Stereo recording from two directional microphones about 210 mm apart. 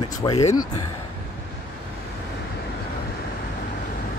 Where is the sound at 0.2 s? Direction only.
20° left (ahead or behind).